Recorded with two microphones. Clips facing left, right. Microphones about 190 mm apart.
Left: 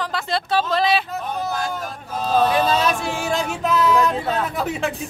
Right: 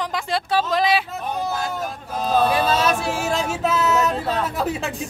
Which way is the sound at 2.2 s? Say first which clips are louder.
Left 1 dB; 5° right (ahead or behind).